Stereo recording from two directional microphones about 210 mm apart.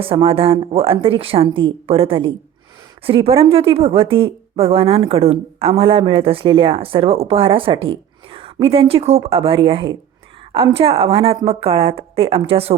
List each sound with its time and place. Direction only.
0.0 s speech: 25° right (ahead or behind)